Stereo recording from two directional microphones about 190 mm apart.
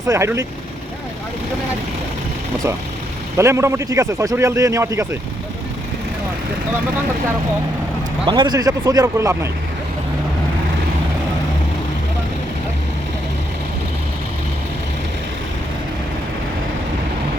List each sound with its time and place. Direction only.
0.1 s a man's voice: 15° right (ahead or behind)
3.3 s a man's voice: 15° right (ahead or behind)
8.2 s speech: 25° right (ahead or behind)